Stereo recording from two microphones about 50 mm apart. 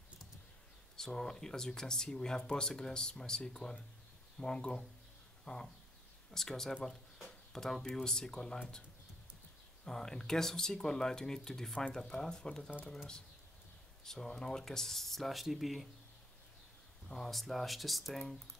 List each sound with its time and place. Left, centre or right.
0.9 s speech: centre
9.8 s speech: centre
17.1 s speech: centre